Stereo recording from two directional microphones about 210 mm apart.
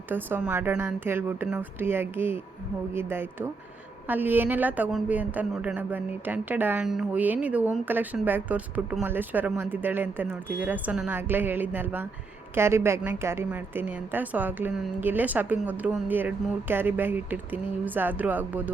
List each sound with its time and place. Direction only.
0.1 s a woman's voice: 10° right (ahead or behind)